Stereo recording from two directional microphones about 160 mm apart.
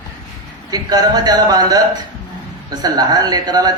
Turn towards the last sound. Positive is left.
turn(degrees=-25)  # may be behind; listen again after turning